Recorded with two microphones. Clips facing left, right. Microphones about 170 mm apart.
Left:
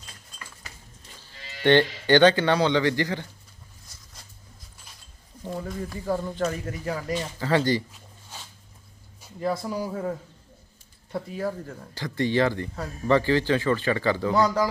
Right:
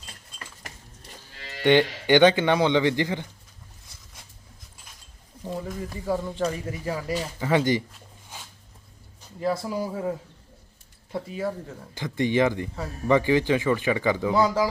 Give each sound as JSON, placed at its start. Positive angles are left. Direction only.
{"t": 1.6, "sound": "speech", "side_deg": -10}
{"t": 5.5, "sound": "a man's voice", "side_deg": 0}
{"t": 9.4, "sound": "a man's voice", "side_deg": -5}
{"t": 11.9, "sound": "speech", "side_deg": -20}